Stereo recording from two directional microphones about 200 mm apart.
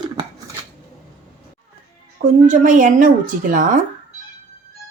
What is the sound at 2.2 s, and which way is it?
Speech, 40° right (ahead or behind).